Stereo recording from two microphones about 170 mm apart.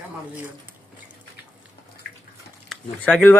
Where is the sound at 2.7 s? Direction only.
5° left (ahead or behind).